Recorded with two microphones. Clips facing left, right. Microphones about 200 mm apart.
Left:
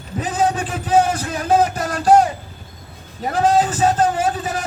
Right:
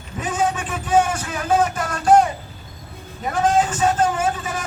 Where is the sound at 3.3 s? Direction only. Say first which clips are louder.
Left 2 dB; 35° left (ahead or behind).